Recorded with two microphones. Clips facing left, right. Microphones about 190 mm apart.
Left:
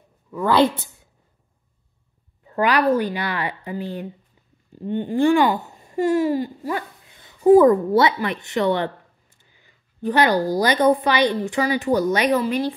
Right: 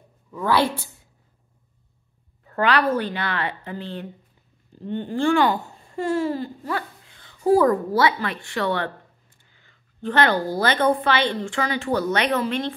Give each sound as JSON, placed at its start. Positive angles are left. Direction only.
{"t": 2.4, "sound": "a woman's voice", "side_deg": 15}